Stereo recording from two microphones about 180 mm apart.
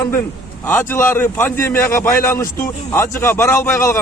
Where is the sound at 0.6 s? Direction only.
10° left (ahead or behind).